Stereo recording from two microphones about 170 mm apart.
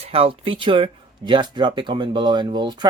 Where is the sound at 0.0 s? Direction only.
35° right (ahead or behind).